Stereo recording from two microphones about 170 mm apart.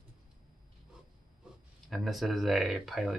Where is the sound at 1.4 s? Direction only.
5° right (ahead or behind).